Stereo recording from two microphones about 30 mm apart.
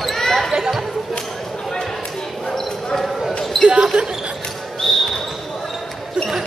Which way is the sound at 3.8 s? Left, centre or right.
Right.